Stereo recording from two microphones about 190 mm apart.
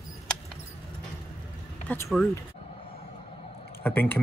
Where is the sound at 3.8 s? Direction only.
10° left (ahead or behind).